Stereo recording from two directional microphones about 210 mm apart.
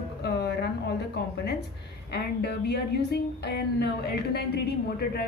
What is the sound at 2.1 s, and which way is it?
A woman's voice, 50° left (ahead or behind).